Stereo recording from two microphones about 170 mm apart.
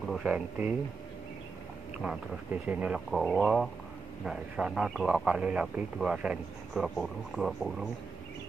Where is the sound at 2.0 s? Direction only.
5° right (ahead or behind).